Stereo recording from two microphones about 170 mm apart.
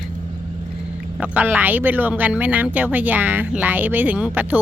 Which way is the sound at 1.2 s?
10° right (ahead or behind).